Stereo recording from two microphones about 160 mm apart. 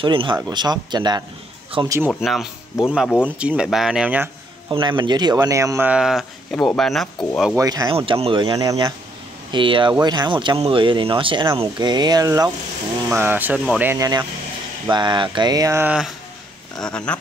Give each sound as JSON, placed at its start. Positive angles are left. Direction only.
{"t": 0.0, "sound": "speech", "side_deg": -30}
{"t": 2.1, "sound": "speech", "side_deg": 0}
{"t": 4.6, "sound": "speech", "side_deg": -30}
{"t": 5.9, "sound": "speech", "side_deg": -5}
{"t": 7.5, "sound": "speech", "side_deg": -20}
{"t": 7.9, "sound": "speech", "side_deg": -35}
{"t": 9.5, "sound": "speech", "side_deg": -30}
{"t": 16.8, "sound": "speech", "side_deg": 5}